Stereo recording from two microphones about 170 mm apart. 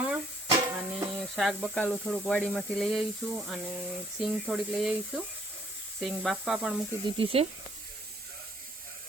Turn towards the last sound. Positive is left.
turn(degrees=-35)  # may be behind; listen again after turning